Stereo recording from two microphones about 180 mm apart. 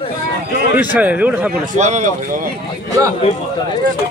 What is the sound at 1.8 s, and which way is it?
Speech, 40° right (ahead or behind).